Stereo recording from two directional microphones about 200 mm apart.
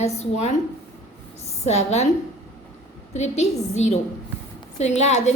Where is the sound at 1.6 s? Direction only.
35° left (ahead or behind).